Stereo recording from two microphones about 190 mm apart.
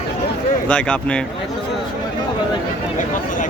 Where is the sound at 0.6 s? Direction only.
5° left (ahead or behind).